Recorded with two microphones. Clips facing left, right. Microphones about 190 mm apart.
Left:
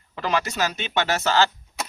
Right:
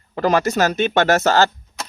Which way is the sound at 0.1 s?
45° right (ahead or behind).